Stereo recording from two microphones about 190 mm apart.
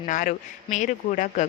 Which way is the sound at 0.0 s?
45° left (ahead or behind).